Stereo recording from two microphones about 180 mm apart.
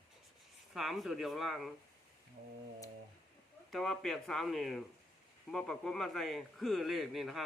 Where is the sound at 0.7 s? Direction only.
Centre (ahead or behind).